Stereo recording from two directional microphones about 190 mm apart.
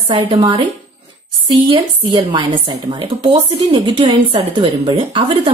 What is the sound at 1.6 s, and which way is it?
Speech, 25° right (ahead or behind).